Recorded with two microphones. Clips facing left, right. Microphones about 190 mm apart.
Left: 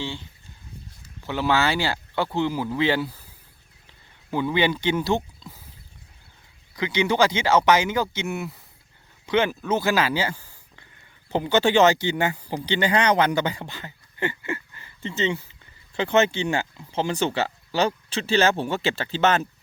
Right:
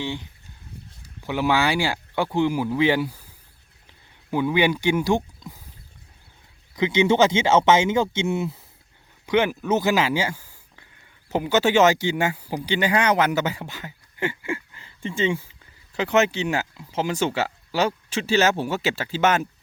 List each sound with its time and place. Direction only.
0.0 s speech: 15° right (ahead or behind)
4.3 s speech: 10° right (ahead or behind)
6.7 s speech: 20° right (ahead or behind)
9.2 s speech: 15° right (ahead or behind)